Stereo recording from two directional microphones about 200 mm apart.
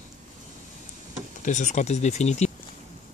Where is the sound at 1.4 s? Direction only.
35° left (ahead or behind).